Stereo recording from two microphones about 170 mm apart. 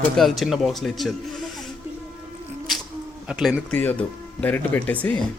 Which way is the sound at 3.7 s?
10° left (ahead or behind).